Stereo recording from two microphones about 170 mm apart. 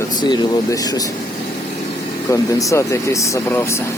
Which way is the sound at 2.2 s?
20° left (ahead or behind).